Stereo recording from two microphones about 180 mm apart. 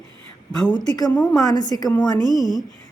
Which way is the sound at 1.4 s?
20° left (ahead or behind).